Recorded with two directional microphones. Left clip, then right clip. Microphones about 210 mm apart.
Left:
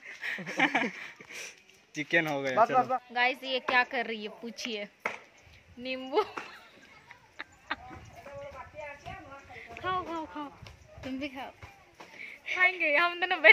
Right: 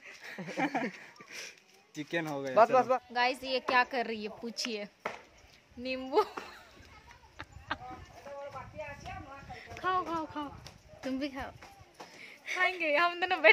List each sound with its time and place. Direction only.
0.2 s a sound: centre (ahead or behind)
2.0 s speech: 30° left (ahead or behind)
2.5 s speech: 30° right (ahead or behind)
3.1 s a woman's voice: 5° right (ahead or behind)
7.3 s a sound: 10° right (ahead or behind)
9.6 s speech: 15° right (ahead or behind)
11.1 s speech: 25° right (ahead or behind)
12.6 s a woman's voice: 10° right (ahead or behind)